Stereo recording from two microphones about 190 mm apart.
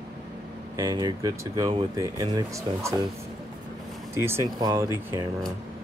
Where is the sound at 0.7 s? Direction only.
20° right (ahead or behind).